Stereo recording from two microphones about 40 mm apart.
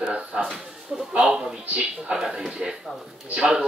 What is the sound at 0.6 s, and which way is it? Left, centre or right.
A man's voice, centre.